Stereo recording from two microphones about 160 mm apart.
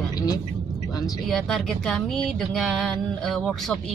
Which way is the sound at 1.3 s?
Centre (ahead or behind).